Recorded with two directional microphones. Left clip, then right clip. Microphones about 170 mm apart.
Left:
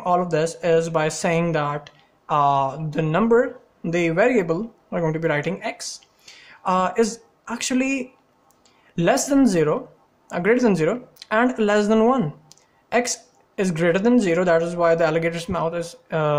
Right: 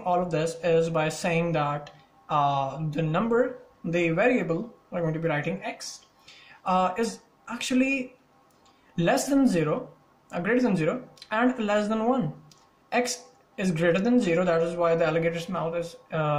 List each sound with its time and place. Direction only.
0.0 s speech: 40° left (ahead or behind)